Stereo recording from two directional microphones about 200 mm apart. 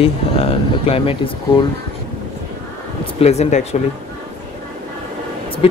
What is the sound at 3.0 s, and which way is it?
Speech, 30° left (ahead or behind).